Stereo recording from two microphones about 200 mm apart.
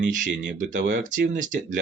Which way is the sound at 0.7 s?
45° right (ahead or behind).